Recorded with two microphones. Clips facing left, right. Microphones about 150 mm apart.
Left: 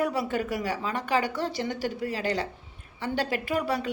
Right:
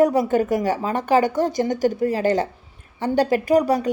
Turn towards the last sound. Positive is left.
turn(degrees=-45)  # may be behind; listen again after turning